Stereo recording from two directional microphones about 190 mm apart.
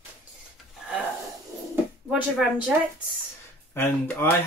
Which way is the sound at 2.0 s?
5° right (ahead or behind).